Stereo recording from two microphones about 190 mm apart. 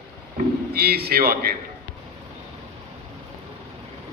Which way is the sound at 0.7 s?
55° right (ahead or behind).